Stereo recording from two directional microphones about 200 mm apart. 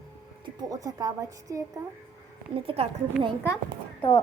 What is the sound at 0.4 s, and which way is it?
A woman's voice, 15° right (ahead or behind).